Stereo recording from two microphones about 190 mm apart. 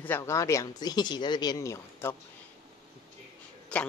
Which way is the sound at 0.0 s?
15° left (ahead or behind).